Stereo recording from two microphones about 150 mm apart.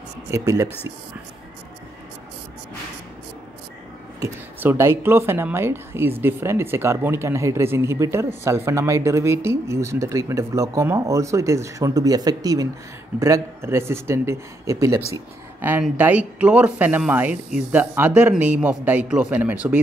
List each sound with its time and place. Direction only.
0.3 s a woman's voice: 20° right (ahead or behind)
4.2 s a woman's voice: 15° right (ahead or behind)